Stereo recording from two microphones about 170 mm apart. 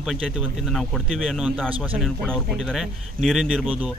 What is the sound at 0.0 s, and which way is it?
Speech, centre (ahead or behind).